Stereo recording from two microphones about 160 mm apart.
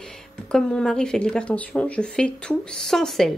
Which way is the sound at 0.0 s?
5° left (ahead or behind).